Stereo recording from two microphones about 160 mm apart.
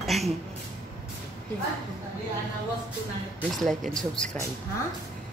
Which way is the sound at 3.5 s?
Centre (ahead or behind).